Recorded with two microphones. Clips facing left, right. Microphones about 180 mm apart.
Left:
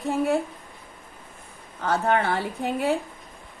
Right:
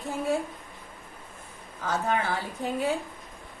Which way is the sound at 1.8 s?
65° left (ahead or behind).